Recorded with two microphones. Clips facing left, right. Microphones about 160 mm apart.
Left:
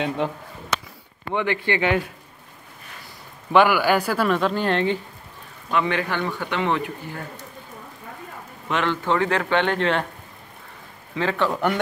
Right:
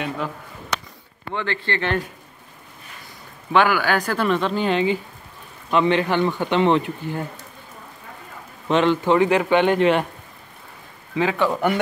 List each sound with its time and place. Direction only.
1.3 s speech: 15° left (ahead or behind)
3.5 s speech: 10° left (ahead or behind)
5.7 s speech: 25° right (ahead or behind)
8.6 s speech: 20° right (ahead or behind)
11.1 s speech: 5° right (ahead or behind)